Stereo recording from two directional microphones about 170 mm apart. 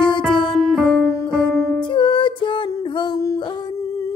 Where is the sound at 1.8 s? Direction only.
30° left (ahead or behind).